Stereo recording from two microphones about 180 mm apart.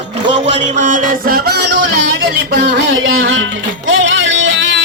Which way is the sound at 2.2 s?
60° right (ahead or behind).